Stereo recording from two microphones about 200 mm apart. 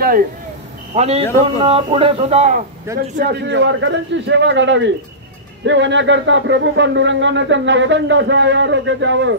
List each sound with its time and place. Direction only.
0.0 s speech: 45° right (ahead or behind)
0.9 s a man's voice: 30° right (ahead or behind)
3.2 s speech: 60° right (ahead or behind)